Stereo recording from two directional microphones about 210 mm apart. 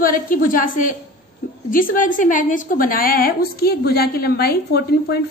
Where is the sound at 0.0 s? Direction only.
40° left (ahead or behind).